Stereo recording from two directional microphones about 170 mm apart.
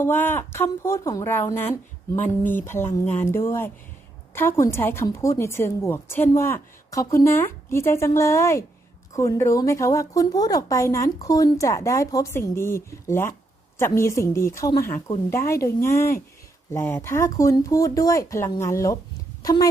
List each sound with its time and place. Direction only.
0.0 s a woman's voice: 10° left (ahead or behind)